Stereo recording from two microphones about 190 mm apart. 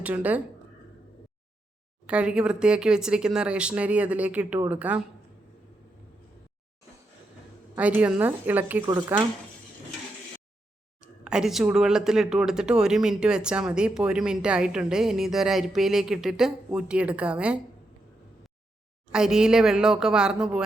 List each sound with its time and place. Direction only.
0.0 s a woman's voice: 10° right (ahead or behind)
2.0 s speech: 5° right (ahead or behind)
7.8 s a woman's voice: 5° right (ahead or behind)
11.2 s speech: 5° right (ahead or behind)
19.1 s speech: 5° right (ahead or behind)